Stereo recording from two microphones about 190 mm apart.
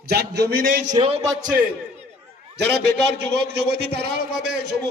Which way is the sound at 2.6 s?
60° right (ahead or behind).